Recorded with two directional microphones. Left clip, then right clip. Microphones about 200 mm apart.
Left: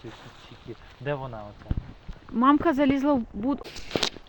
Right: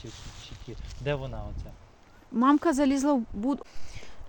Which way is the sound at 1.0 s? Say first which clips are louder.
Even; 55° right (ahead or behind).